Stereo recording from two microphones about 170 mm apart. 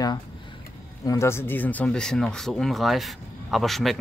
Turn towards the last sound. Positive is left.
turn(degrees=0)  # may be behind; listen again after turning